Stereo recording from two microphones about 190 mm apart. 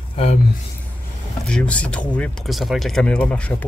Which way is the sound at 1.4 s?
5° left (ahead or behind).